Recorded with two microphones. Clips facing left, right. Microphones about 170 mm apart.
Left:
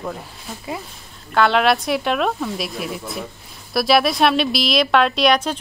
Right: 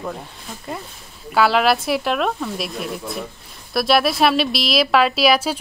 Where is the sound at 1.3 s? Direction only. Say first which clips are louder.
Even; 5° right (ahead or behind).